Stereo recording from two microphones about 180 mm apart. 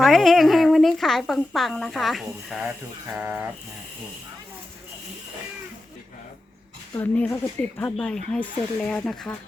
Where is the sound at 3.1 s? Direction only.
5° right (ahead or behind).